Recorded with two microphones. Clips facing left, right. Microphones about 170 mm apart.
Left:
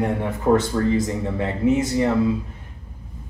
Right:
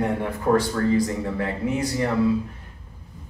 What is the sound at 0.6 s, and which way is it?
Speech, 20° left (ahead or behind).